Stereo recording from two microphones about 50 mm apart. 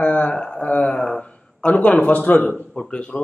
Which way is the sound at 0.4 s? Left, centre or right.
Centre.